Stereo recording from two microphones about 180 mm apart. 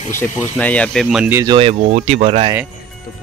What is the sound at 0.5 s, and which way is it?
Speech, 5° left (ahead or behind).